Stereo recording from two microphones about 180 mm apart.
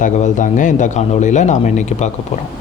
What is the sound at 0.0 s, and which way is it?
Speech, 45° left (ahead or behind).